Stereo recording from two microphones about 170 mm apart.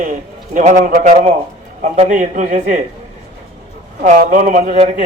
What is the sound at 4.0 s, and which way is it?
Speech, 50° right (ahead or behind).